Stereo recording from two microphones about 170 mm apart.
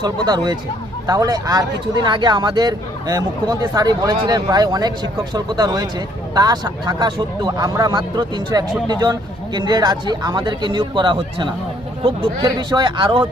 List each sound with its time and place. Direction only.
0.0 s speech: 25° right (ahead or behind)